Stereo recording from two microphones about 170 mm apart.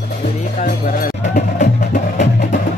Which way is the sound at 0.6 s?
55° left (ahead or behind).